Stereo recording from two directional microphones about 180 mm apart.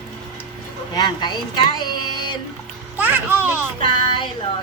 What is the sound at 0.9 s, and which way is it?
Speech, 25° left (ahead or behind).